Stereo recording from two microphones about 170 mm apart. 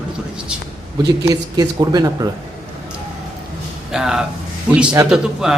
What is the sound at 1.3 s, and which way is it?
Speech, 25° right (ahead or behind).